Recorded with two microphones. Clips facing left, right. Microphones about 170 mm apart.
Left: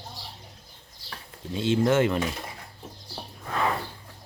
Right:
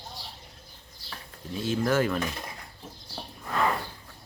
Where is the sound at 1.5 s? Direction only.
25° left (ahead or behind).